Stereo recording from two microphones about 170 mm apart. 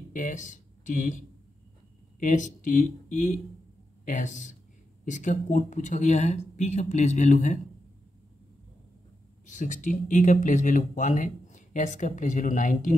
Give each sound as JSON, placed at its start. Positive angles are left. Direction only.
{"t": 0.1, "sound": "speech", "side_deg": 50}
{"t": 9.5, "sound": "speech", "side_deg": 45}